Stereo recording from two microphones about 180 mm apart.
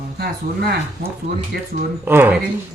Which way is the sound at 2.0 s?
10° right (ahead or behind).